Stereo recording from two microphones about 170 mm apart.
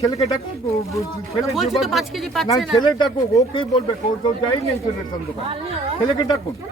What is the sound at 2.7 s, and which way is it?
Speech, 25° left (ahead or behind).